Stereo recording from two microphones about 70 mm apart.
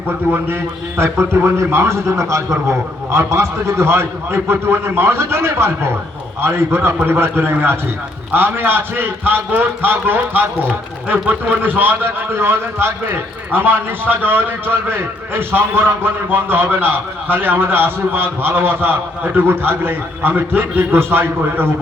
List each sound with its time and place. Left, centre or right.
0.3 s a man's voice: right